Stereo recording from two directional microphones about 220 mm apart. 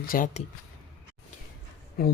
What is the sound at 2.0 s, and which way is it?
Speech, 45° left (ahead or behind).